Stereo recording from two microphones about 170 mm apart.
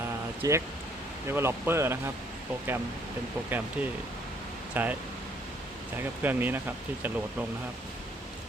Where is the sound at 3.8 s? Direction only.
10° right (ahead or behind).